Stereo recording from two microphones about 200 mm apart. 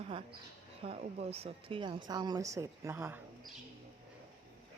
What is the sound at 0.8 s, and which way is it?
Speech, 30° right (ahead or behind).